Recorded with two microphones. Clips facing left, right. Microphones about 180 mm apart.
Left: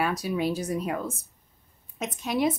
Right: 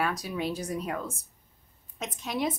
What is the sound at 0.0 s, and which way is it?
Speech, 5° left (ahead or behind).